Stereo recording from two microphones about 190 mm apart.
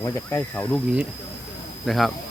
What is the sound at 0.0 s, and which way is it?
Speech, 15° left (ahead or behind).